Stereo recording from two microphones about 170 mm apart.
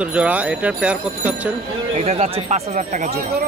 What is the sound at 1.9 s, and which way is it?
Speech, 35° right (ahead or behind).